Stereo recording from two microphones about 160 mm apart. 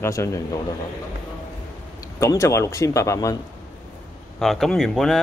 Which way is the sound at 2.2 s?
20° left (ahead or behind).